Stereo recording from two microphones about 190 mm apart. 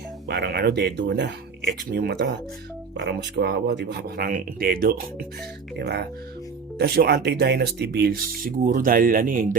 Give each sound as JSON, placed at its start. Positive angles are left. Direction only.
{"t": 0.3, "sound": "speech", "side_deg": -55}
{"t": 5.7, "sound": "speech", "side_deg": -60}